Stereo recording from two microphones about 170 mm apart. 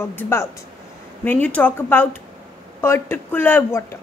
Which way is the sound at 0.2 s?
15° left (ahead or behind).